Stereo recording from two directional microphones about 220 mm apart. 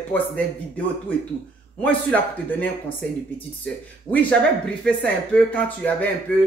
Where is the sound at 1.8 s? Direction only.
5° left (ahead or behind).